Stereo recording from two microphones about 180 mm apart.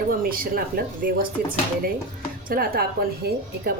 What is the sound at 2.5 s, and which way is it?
A woman's voice, 55° right (ahead or behind).